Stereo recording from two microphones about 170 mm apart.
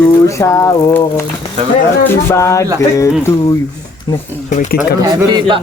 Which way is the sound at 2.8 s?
20° left (ahead or behind).